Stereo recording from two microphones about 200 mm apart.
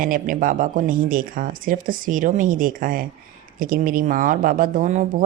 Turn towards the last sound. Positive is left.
turn(degrees=-40)  # may be behind; listen again after turning